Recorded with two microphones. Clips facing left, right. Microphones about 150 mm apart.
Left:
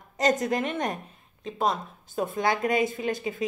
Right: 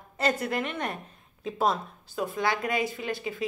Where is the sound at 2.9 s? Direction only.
45° left (ahead or behind).